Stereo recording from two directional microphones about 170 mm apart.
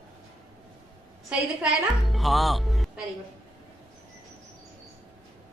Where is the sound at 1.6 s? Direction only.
Centre (ahead or behind).